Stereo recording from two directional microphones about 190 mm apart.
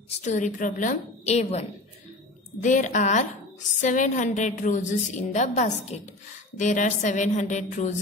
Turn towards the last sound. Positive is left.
turn(degrees=40)  # may be behind; listen again after turning